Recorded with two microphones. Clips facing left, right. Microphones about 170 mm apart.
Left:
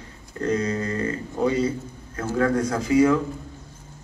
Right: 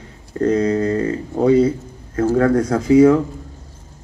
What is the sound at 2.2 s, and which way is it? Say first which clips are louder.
Speech: right 7 dB; 40° right (ahead or behind).